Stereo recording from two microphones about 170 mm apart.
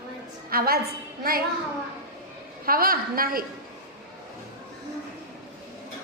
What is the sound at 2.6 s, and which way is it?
Speech, 60° right (ahead or behind).